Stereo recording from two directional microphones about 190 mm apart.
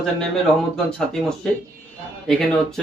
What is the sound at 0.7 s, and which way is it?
Speech, 5° left (ahead or behind).